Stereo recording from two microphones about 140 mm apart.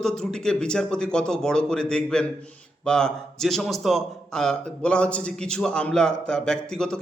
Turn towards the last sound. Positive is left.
turn(degrees=5)  # may be behind; listen again after turning